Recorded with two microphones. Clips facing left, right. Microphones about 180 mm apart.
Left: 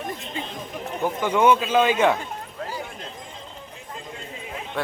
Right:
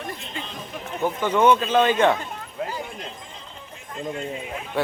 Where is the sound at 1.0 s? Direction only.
10° left (ahead or behind).